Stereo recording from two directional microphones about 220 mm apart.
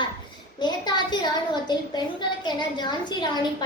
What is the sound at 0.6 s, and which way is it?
A woman's voice, 20° left (ahead or behind).